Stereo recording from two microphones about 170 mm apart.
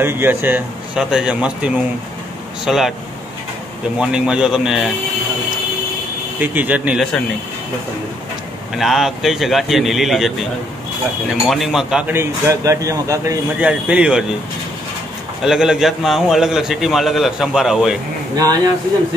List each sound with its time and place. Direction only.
0.0 s a man's voice: 10° right (ahead or behind)
4.0 s a man's voice: 5° right (ahead or behind)
6.4 s a man's voice: 10° right (ahead or behind)
8.7 s a man's voice: centre (ahead or behind)
11.5 s a man's voice: centre (ahead or behind)
12.2 s a man's voice: 15° right (ahead or behind)
15.4 s a man's voice: 5° right (ahead or behind)
18.3 s speech: 20° right (ahead or behind)